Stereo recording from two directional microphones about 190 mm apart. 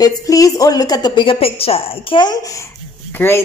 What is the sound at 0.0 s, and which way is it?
A woman's voice, 20° left (ahead or behind).